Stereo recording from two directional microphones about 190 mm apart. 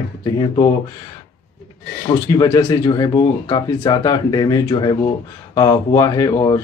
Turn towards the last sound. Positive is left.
turn(degrees=20)  # may be behind; listen again after turning